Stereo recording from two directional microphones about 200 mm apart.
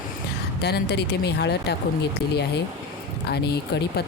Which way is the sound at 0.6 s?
55° left (ahead or behind).